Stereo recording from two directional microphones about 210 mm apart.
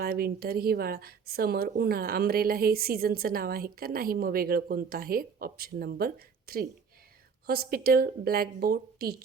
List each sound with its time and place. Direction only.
0.0 s a woman's voice: 45° right (ahead or behind)